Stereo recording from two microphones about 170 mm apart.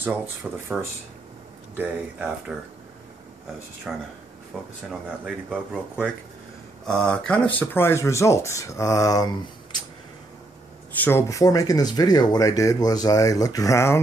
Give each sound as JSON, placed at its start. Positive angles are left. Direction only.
{"t": 0.5, "sound": "speech", "side_deg": -10}
{"t": 1.8, "sound": "speech", "side_deg": -10}
{"t": 3.9, "sound": "speech", "side_deg": -5}
{"t": 6.9, "sound": "speech", "side_deg": 5}
{"t": 11.0, "sound": "speech", "side_deg": 15}